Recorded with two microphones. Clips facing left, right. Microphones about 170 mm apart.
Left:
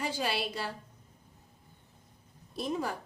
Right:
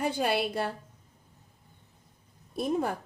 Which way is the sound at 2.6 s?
55° right (ahead or behind).